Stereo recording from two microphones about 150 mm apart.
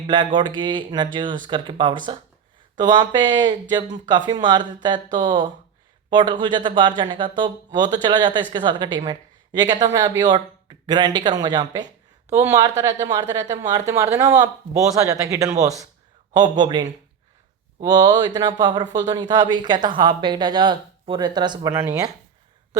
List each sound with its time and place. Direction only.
0.3 s speech: 30° right (ahead or behind)
12.3 s speech: 15° right (ahead or behind)
13.2 s speech: 50° right (ahead or behind)
13.7 s speech: 20° right (ahead or behind)
21.7 s speech: 15° right (ahead or behind)